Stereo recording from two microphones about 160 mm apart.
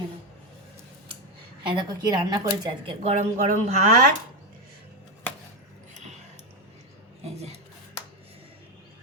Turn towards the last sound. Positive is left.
turn(degrees=-40)  # may be behind; listen again after turning